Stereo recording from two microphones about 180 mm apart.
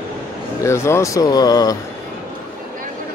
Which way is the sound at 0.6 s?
15° left (ahead or behind).